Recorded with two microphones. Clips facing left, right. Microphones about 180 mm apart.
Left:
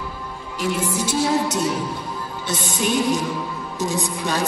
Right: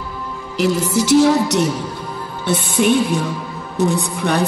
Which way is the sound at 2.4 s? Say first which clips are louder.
Right 8 dB; 60° right (ahead or behind).